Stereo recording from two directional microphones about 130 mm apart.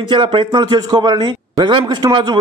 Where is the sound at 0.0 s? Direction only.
40° right (ahead or behind).